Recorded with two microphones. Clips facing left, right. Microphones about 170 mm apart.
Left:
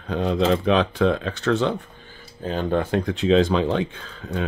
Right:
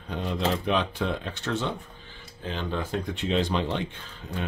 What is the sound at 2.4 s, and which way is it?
Speech, 45° left (ahead or behind).